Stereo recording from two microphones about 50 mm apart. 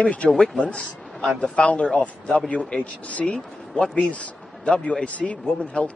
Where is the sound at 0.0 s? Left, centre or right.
Left.